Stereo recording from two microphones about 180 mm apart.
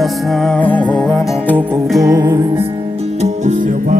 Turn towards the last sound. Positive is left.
turn(degrees=-45)  # may be behind; listen again after turning